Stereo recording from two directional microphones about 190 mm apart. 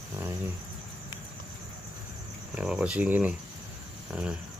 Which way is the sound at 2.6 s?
5° right (ahead or behind).